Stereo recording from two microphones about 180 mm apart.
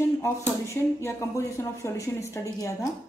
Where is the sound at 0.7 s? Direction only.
15° left (ahead or behind).